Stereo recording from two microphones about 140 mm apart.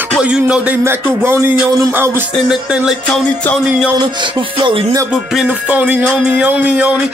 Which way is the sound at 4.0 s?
35° right (ahead or behind).